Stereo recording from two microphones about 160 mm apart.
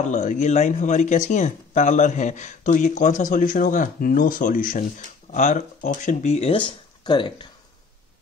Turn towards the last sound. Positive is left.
turn(degrees=30)  # may be behind; listen again after turning